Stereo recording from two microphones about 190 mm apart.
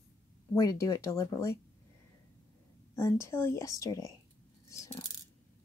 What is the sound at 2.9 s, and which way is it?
Speech, 15° left (ahead or behind).